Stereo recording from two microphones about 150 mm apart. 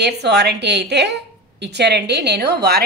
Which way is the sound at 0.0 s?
90° right.